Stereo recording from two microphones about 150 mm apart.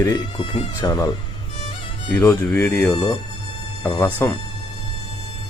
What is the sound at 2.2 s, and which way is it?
Speech, 10° left (ahead or behind).